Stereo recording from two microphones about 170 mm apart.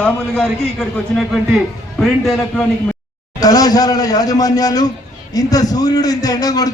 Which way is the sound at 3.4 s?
20° left (ahead or behind).